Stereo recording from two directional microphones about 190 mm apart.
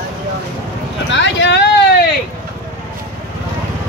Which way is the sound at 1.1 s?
70° left (ahead or behind).